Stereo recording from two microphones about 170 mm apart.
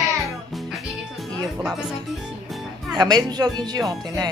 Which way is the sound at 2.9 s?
25° right (ahead or behind).